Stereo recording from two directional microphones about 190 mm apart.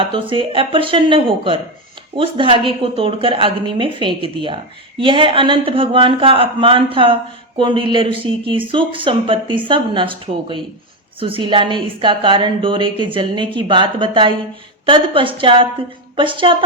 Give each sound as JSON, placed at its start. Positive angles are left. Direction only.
{"t": 0.0, "sound": "a woman's voice", "side_deg": -25}